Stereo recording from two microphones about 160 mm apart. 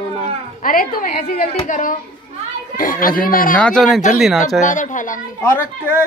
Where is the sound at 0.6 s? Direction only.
60° left (ahead or behind).